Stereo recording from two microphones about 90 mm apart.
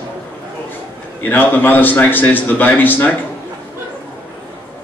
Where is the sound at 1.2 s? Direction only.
20° left (ahead or behind).